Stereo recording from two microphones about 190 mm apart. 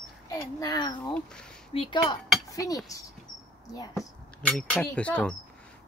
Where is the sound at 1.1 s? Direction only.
5° left (ahead or behind).